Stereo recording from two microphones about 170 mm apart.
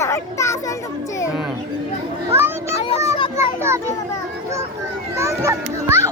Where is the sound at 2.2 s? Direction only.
15° right (ahead or behind).